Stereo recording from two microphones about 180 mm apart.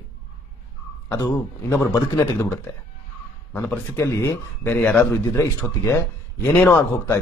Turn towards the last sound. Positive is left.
turn(degrees=10)  # may be behind; listen again after turning